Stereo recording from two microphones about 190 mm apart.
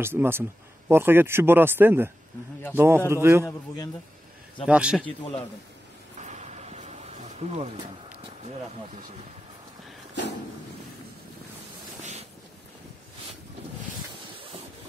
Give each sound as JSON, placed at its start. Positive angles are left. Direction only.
{"t": 0.0, "sound": "speech", "side_deg": -10}
{"t": 3.4, "sound": "a man's voice", "side_deg": 20}
{"t": 4.6, "sound": "speech", "side_deg": -5}
{"t": 6.1, "sound": "a sound", "side_deg": -40}
{"t": 12.0, "sound": "vehicle", "side_deg": -35}